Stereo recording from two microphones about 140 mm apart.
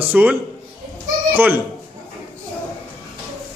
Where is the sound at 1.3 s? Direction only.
15° right (ahead or behind).